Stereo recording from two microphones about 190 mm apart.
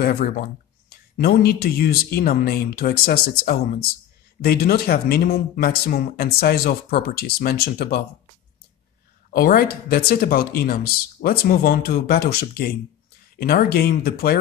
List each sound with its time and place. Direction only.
0.0 s speech: 50° left (ahead or behind)
9.3 s speech: 50° left (ahead or behind)